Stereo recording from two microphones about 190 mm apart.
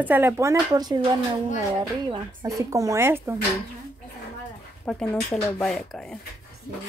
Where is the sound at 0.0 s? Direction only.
10° right (ahead or behind).